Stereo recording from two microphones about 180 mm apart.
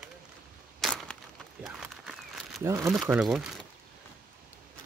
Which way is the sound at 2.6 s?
15° right (ahead or behind).